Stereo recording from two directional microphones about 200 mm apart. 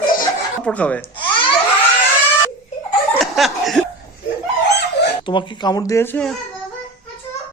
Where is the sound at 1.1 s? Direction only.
25° left (ahead or behind).